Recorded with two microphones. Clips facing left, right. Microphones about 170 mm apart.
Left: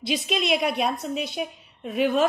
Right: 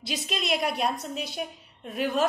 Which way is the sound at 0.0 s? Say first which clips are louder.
Left 6 dB; 60° left (ahead or behind).